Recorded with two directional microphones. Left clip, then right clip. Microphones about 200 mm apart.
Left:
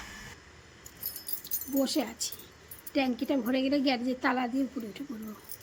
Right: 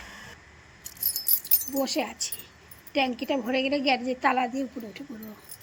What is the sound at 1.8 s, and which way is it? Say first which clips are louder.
A woman's voice: right 2 dB; 5° left (ahead or behind).